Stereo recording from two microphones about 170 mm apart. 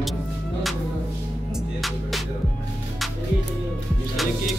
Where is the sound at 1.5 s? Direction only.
Centre (ahead or behind).